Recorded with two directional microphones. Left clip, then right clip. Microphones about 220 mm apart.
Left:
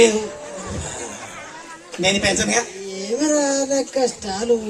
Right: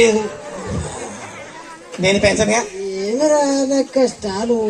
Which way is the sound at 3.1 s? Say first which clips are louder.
Right 4 dB; 55° left (ahead or behind).